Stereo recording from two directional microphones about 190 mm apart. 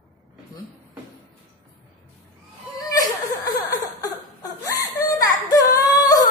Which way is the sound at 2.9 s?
20° left (ahead or behind).